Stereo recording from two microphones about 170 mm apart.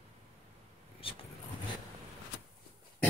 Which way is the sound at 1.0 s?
30° left (ahead or behind).